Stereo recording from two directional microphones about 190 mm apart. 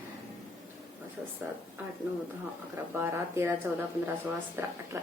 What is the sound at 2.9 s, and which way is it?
Speech, 10° right (ahead or behind).